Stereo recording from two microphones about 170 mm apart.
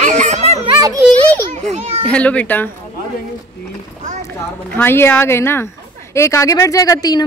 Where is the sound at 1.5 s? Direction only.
40° right (ahead or behind).